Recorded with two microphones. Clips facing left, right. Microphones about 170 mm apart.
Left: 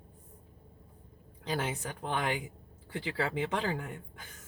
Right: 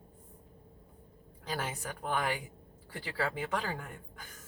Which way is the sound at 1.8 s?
25° left (ahead or behind).